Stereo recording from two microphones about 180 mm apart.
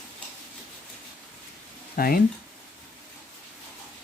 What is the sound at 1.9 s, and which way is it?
Speech, 55° left (ahead or behind).